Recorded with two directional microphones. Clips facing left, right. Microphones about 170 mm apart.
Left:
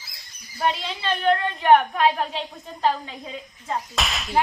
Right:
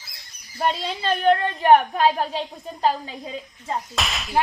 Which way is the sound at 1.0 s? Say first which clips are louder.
Right 2 dB; 40° right (ahead or behind).